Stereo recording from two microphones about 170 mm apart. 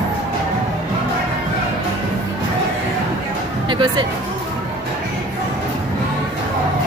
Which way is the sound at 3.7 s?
30° right (ahead or behind).